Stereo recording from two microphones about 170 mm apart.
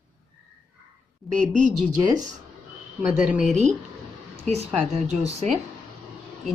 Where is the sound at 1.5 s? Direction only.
45° right (ahead or behind).